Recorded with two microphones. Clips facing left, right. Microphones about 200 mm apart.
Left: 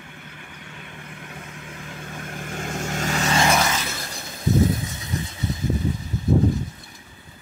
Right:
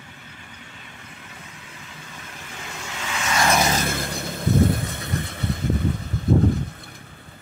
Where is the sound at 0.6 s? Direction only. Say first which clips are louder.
Left 4 dB; 55° left (ahead or behind); by 3.4 s 40° left (ahead or behind).